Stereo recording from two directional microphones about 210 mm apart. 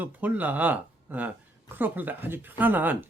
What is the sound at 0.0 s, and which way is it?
Speech, 10° right (ahead or behind).